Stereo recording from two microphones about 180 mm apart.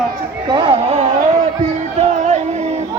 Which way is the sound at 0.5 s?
30° right (ahead or behind).